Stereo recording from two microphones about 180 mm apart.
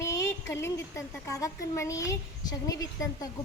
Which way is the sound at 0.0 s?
15° left (ahead or behind).